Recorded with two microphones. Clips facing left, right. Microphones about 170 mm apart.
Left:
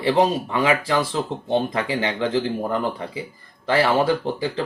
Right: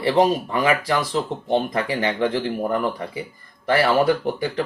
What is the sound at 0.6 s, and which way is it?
Speech, 25° left (ahead or behind).